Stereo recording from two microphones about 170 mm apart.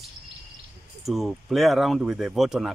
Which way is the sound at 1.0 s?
Centre (ahead or behind).